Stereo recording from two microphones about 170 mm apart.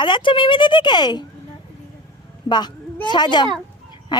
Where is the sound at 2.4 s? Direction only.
25° left (ahead or behind).